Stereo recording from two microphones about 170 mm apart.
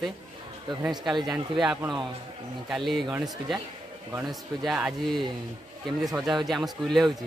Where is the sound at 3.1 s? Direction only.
20° right (ahead or behind).